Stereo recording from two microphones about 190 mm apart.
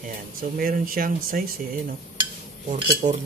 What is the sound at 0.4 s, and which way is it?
Speech, 50° right (ahead or behind).